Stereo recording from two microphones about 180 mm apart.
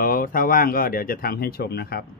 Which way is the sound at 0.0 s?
50° left (ahead or behind).